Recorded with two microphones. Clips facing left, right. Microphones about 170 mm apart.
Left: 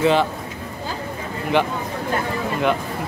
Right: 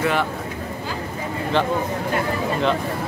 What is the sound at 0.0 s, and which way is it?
Speech, 25° left (ahead or behind).